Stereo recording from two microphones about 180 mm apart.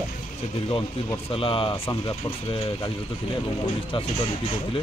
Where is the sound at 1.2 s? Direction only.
30° left (ahead or behind).